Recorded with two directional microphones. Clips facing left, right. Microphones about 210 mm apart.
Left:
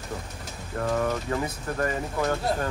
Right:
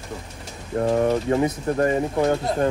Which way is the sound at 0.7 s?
30° right (ahead or behind).